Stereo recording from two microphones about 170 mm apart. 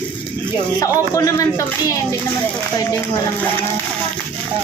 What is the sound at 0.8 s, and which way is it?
Speech, 20° left (ahead or behind).